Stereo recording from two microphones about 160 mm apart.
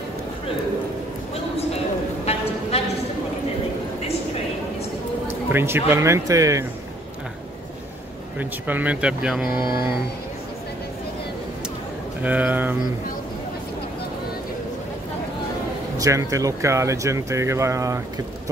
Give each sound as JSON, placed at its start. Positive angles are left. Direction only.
{"t": 5.5, "sound": "speech", "side_deg": -15}
{"t": 8.4, "sound": "speech", "side_deg": -10}
{"t": 9.6, "sound": "speech", "side_deg": -15}
{"t": 12.2, "sound": "speech", "side_deg": -10}
{"t": 16.0, "sound": "speech", "side_deg": -20}